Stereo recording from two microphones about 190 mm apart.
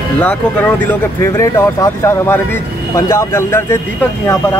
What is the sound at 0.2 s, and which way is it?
Speech, 10° left (ahead or behind).